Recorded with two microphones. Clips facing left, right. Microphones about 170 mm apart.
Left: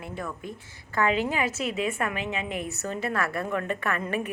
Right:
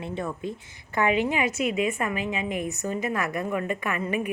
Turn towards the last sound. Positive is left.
turn(degrees=-10)  # may be behind; listen again after turning